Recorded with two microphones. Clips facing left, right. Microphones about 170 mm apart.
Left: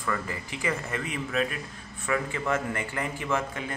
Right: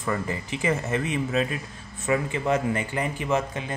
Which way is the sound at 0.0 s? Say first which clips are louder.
Right 4 dB; 25° right (ahead or behind).